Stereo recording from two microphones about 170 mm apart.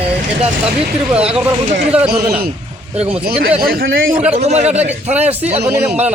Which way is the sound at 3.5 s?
65° right (ahead or behind).